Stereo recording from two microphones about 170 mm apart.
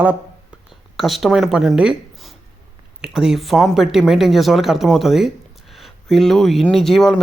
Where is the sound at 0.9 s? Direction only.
Centre (ahead or behind).